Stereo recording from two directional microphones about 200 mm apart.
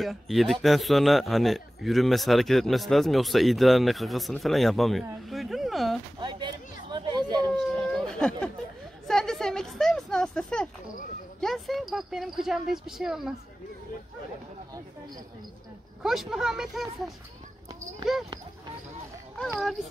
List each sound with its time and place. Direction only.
0.0 s a man's voice: centre (ahead or behind)
6.1 s a sound: 20° right (ahead or behind)
8.1 s speech: 5° left (ahead or behind)
9.0 s a sound: centre (ahead or behind)
11.4 s a man's voice: centre (ahead or behind)
16.0 s a man's voice: centre (ahead or behind)